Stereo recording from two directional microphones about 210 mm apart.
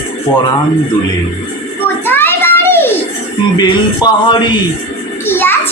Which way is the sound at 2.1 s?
10° left (ahead or behind).